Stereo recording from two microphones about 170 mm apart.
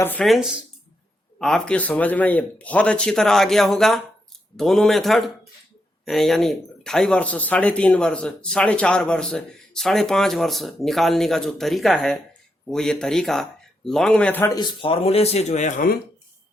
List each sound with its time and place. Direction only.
0.0 s speech: 10° left (ahead or behind)
0.3 s speech: 5° right (ahead or behind)
14.5 s speech: 30° left (ahead or behind); by 16.0 s 50° left (ahead or behind)